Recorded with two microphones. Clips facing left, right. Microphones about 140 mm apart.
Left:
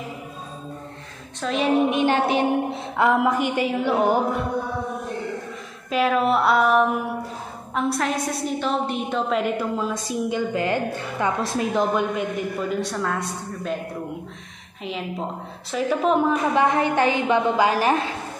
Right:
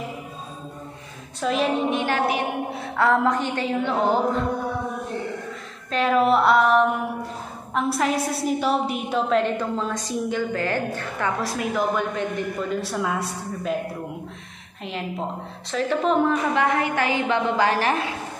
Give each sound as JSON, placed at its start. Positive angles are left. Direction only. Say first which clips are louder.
{"t": 1.4, "sound": "a woman's voice", "louder": "right 1 dB", "side_deg": 0}
{"t": 1.9, "sound": "a woman's voice", "louder": "left 2 dB", "side_deg": 20}
{"t": 5.9, "sound": "a woman's voice", "louder": "right 1 dB", "side_deg": 5}
{"t": 12.6, "sound": "a woman's voice", "louder": "left 1 dB", "side_deg": -5}
{"t": 14.8, "sound": "a woman's voice", "louder": "even", "side_deg": 0}
{"t": 16.5, "sound": "a woman's voice", "louder": "left 3 dB", "side_deg": 20}